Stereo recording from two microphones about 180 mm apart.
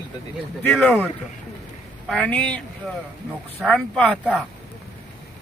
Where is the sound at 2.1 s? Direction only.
5° left (ahead or behind).